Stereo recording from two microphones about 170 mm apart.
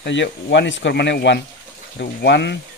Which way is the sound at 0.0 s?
90° left.